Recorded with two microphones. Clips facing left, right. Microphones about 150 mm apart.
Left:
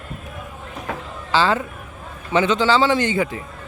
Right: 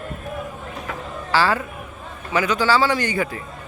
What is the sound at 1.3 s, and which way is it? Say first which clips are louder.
Speech: left 1 dB; 20° left (ahead or behind).